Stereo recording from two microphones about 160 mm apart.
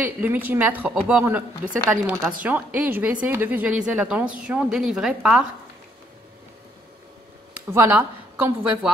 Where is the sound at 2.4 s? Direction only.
10° right (ahead or behind).